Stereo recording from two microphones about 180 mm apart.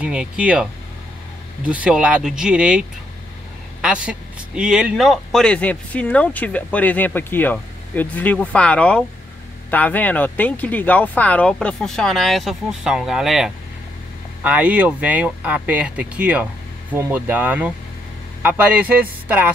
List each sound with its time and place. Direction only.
0.0 s speech: 5° right (ahead or behind)
1.7 s speech: 5° right (ahead or behind)